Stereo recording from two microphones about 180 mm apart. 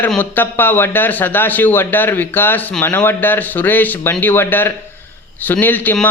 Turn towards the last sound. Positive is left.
turn(degrees=10)  # may be behind; listen again after turning